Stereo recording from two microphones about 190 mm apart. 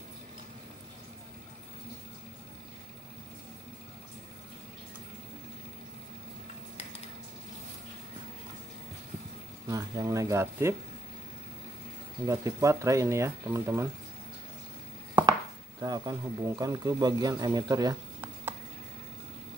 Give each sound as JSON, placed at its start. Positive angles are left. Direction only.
{"t": 9.7, "sound": "speech", "side_deg": -20}
{"t": 12.3, "sound": "speech", "side_deg": -15}
{"t": 15.8, "sound": "speech", "side_deg": -20}